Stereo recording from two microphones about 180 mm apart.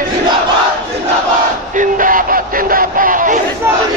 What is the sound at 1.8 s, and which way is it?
Battle cry, 50° right (ahead or behind).